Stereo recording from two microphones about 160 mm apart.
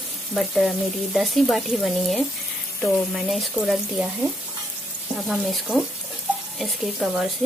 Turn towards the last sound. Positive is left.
turn(degrees=0)  # may be behind; listen again after turning